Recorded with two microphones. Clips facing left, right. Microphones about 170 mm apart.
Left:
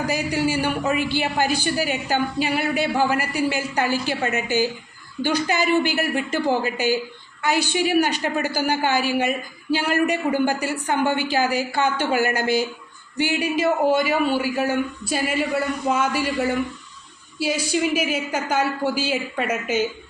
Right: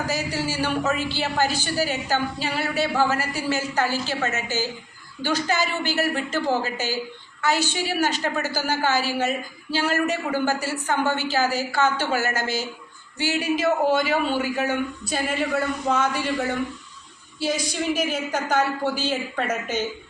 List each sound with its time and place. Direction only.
0.1 s a woman's voice: 15° left (ahead or behind)
0.9 s a woman's voice: 50° left (ahead or behind)
1.9 s a woman's voice: 15° left (ahead or behind)
17.4 s a woman's voice: 10° left (ahead or behind)